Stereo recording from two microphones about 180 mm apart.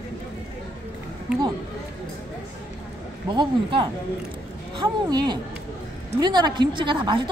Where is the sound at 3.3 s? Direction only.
25° right (ahead or behind).